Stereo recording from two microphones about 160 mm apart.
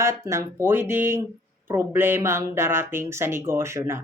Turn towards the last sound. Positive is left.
turn(degrees=-15)  # may be behind; listen again after turning